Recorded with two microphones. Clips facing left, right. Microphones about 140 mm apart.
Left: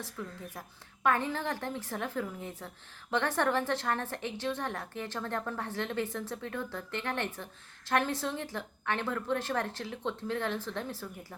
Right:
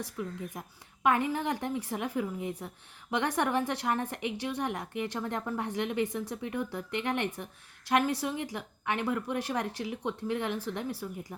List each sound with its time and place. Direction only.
0.0 s a woman's voice: 15° right (ahead or behind)